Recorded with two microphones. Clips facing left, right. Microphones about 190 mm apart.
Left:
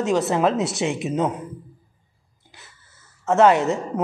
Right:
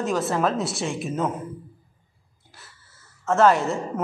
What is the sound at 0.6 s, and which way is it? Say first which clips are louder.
Speech: left 4 dB; centre (ahead or behind).